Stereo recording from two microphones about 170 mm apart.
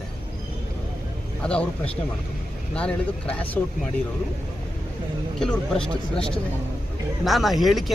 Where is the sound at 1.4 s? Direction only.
5° left (ahead or behind).